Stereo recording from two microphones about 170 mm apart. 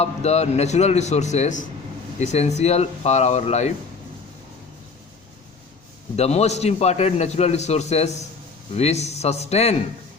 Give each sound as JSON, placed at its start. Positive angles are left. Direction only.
{"t": 0.0, "sound": "a man's voice", "side_deg": 40}
{"t": 6.1, "sound": "a man's voice", "side_deg": 40}